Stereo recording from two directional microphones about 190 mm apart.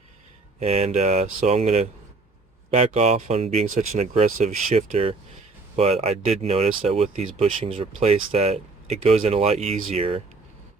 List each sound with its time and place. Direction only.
0.6 s speech: 35° right (ahead or behind)